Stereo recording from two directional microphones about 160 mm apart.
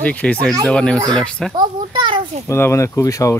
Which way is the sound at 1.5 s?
30° right (ahead or behind).